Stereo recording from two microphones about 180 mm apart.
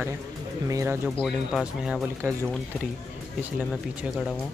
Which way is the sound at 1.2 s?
5° right (ahead or behind).